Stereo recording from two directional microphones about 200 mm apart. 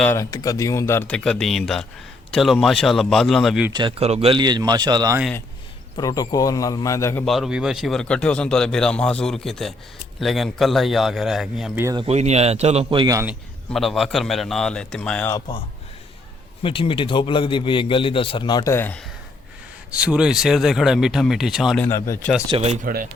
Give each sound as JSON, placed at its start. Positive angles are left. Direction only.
{"t": 0.0, "sound": "speech", "side_deg": 15}
{"t": 3.7, "sound": "speech", "side_deg": -25}
{"t": 6.0, "sound": "speech", "side_deg": 20}
{"t": 7.3, "sound": "speech", "side_deg": 0}
{"t": 11.9, "sound": "speech", "side_deg": -30}
{"t": 13.7, "sound": "speech", "side_deg": 0}
{"t": 16.6, "sound": "a man's voice", "side_deg": 25}
{"t": 19.9, "sound": "speech", "side_deg": -5}
{"t": 21.8, "sound": "speech", "side_deg": 15}
{"t": 22.4, "sound": "speech", "side_deg": -30}